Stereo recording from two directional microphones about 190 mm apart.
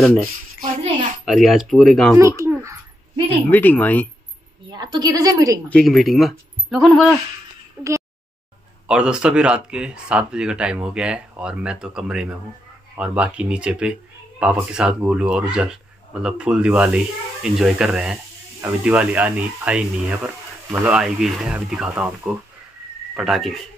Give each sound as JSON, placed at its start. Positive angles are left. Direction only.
{"t": 1.2, "sound": "speech", "side_deg": 0}
{"t": 2.1, "sound": "babbling", "side_deg": -15}
{"t": 3.4, "sound": "speech", "side_deg": 10}
{"t": 4.6, "sound": "a woman's voice", "side_deg": -25}
{"t": 5.7, "sound": "speech", "side_deg": 0}